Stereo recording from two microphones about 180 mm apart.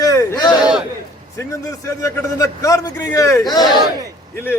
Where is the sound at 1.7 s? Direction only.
15° left (ahead or behind).